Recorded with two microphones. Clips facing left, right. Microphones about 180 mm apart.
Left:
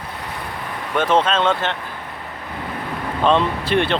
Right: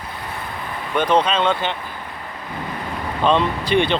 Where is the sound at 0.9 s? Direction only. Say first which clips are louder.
Even; centre (ahead or behind).